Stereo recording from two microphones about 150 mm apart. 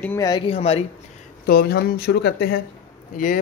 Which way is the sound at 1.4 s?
90° left.